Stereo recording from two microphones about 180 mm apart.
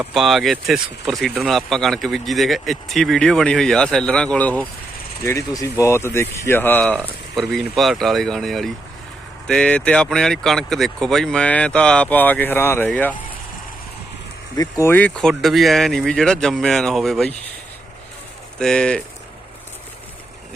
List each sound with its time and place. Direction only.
0.0 s speech: centre (ahead or behind)
14.5 s speech: 20° left (ahead or behind); by 17.3 s centre (ahead or behind)
18.6 s speech: 5° left (ahead or behind)